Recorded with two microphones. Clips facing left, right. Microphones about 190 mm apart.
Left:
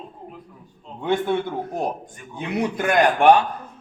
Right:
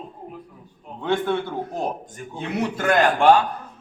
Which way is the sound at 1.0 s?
15° left (ahead or behind).